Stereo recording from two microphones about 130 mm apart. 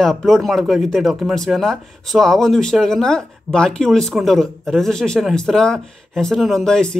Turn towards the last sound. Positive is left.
turn(degrees=5)  # may be behind; listen again after turning